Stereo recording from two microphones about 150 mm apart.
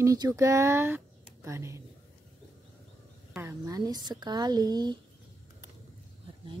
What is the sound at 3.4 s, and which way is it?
Speech, 20° right (ahead or behind).